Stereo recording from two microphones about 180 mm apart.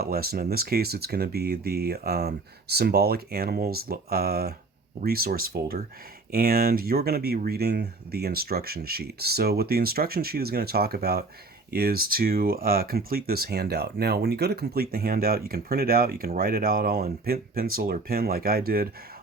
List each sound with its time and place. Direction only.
0.0 s speech: 60° right (ahead or behind)